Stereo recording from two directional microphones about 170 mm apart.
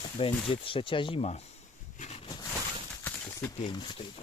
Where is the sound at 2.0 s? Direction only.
40° left (ahead or behind).